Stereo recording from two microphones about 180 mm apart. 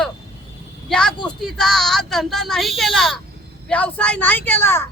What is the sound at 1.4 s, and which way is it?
A woman's voice, centre (ahead or behind).